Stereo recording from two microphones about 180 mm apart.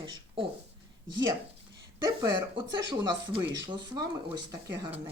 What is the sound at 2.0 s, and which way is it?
Speech, 20° right (ahead or behind).